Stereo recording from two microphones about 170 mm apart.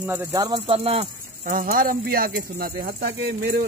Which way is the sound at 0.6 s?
35° right (ahead or behind).